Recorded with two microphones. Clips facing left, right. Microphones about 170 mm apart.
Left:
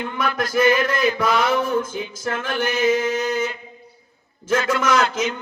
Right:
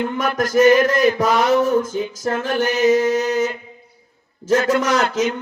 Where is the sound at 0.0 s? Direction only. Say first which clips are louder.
Right 4 dB; 45° right (ahead or behind).